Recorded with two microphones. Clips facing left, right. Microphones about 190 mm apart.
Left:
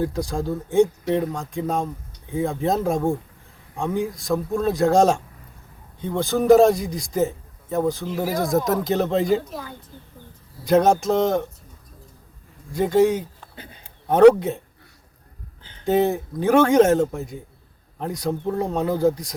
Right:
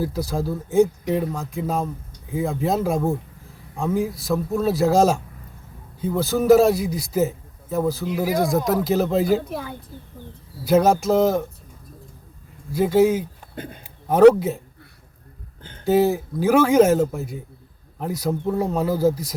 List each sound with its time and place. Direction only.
0.0 s a man's voice: 5° right (ahead or behind)
9.4 s a woman's voice: 60° right (ahead or behind)
10.6 s a man's voice: 5° right (ahead or behind)
12.7 s a man's voice: 5° right (ahead or behind)
13.4 s a sound: 50° right (ahead or behind)
14.1 s a man's voice: 5° right (ahead or behind)
15.8 s a man's voice: centre (ahead or behind)